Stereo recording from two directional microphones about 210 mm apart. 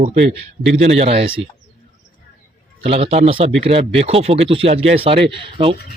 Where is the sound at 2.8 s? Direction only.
25° right (ahead or behind).